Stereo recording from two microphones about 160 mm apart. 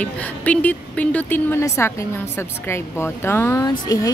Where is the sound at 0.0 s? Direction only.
10° left (ahead or behind).